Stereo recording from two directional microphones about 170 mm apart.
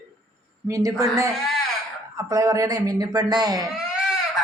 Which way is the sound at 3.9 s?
5° right (ahead or behind).